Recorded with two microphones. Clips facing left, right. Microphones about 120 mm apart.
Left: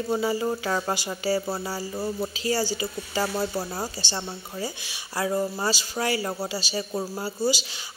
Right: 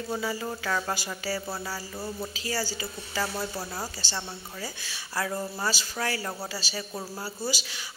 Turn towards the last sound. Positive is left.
turn(degrees=25)  # may be behind; listen again after turning